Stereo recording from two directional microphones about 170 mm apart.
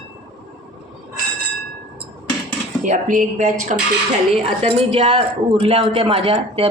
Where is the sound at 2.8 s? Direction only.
45° right (ahead or behind).